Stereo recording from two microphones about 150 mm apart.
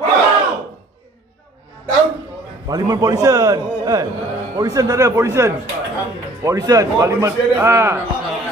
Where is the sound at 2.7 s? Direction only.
25° right (ahead or behind).